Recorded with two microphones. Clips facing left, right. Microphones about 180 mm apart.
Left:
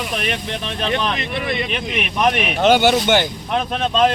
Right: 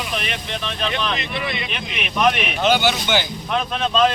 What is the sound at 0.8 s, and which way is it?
Speech, 45° left (ahead or behind).